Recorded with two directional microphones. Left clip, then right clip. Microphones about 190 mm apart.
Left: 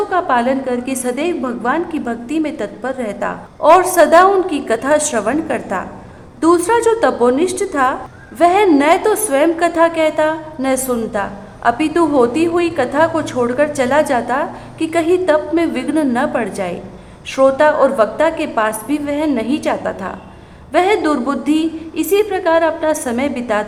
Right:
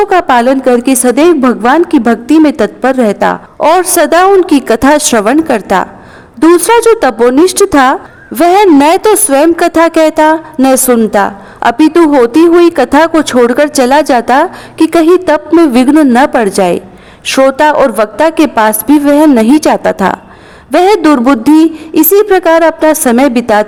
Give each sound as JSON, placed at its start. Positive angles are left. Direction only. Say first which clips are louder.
{"t": 0.1, "sound": "a woman's voice", "louder": "right 8 dB", "side_deg": -50}